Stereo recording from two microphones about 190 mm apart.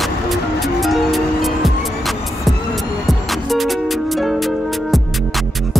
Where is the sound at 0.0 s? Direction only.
Centre (ahead or behind).